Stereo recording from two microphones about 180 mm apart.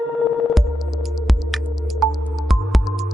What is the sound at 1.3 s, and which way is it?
Music, centre (ahead or behind).